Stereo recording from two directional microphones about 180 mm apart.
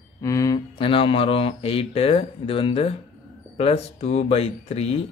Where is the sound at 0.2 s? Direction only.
20° left (ahead or behind).